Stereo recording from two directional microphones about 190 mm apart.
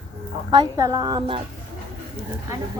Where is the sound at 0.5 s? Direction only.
20° right (ahead or behind).